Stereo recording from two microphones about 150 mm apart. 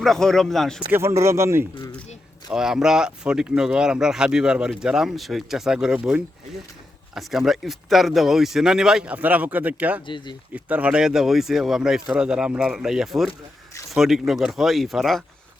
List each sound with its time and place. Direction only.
0.0 s speech: centre (ahead or behind)
0.9 s speech: 15° right (ahead or behind)
2.5 s speech: 5° right (ahead or behind)
10.1 s speech: 30° left (ahead or behind)
10.5 s speech: 10° right (ahead or behind)